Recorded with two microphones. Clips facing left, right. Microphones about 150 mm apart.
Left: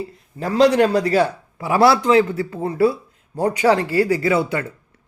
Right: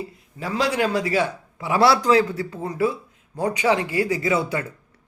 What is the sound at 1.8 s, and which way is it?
A man's voice, 25° left (ahead or behind).